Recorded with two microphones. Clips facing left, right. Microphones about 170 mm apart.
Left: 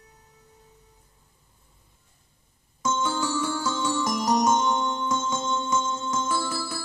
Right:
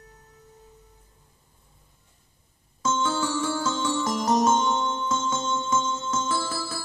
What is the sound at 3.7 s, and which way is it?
Music, 20° right (ahead or behind).